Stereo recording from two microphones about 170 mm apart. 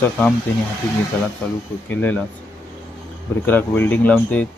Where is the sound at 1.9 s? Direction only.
10° left (ahead or behind).